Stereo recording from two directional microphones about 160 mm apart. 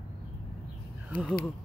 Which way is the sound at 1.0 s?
10° right (ahead or behind).